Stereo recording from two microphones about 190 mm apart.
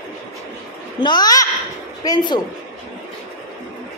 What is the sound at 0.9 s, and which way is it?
A child's voice, 20° left (ahead or behind).